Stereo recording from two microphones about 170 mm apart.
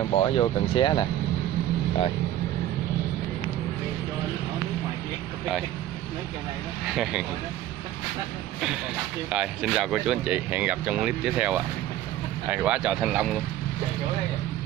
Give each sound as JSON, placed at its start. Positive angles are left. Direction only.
{"t": 0.1, "sound": "speech", "side_deg": 30}
{"t": 6.9, "sound": "speech", "side_deg": -5}
{"t": 9.3, "sound": "speech", "side_deg": -5}